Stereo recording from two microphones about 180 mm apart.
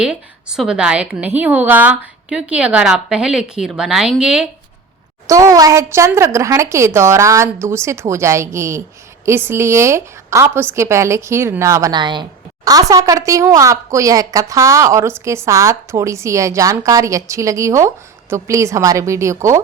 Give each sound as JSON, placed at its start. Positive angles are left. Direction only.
{"t": 0.0, "sound": "a woman's voice", "side_deg": -5}
{"t": 5.3, "sound": "a woman's voice", "side_deg": -20}